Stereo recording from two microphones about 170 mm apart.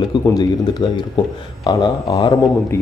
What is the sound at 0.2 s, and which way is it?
Speech, 20° left (ahead or behind).